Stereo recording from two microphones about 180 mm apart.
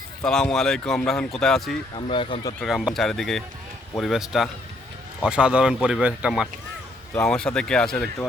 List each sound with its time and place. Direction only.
0.2 s speech: 5° left (ahead or behind)
2.0 s speech: 30° left (ahead or behind)
2.6 s speech: centre (ahead or behind)